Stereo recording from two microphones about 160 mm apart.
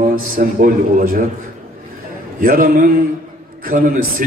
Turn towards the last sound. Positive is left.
turn(degrees=-65)  # may be behind; listen again after turning